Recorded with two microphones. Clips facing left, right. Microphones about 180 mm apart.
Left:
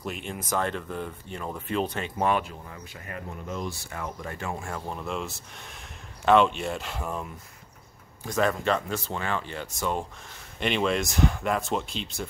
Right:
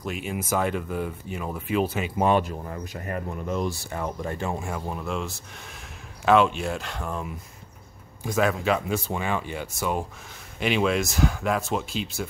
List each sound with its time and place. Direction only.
0.0 s speech: 5° right (ahead or behind)
2.4 s speech: 45° right (ahead or behind)
3.6 s speech: 35° right (ahead or behind)
4.6 s speech: 10° right (ahead or behind)